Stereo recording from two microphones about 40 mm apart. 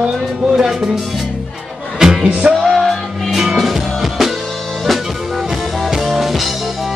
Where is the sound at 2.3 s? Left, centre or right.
Right.